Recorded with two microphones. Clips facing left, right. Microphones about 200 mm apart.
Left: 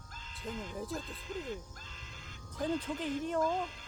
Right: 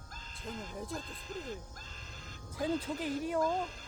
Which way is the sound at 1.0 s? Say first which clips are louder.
Left 2 dB; 40° right (ahead or behind).